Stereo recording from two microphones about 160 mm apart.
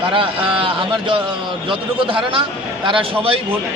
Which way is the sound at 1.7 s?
35° right (ahead or behind).